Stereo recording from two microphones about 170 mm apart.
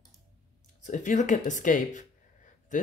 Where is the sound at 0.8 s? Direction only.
45° left (ahead or behind).